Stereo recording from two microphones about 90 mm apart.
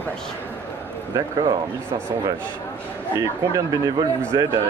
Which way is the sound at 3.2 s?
40° right (ahead or behind).